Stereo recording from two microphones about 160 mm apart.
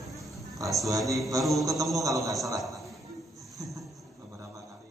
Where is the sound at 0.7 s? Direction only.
20° right (ahead or behind).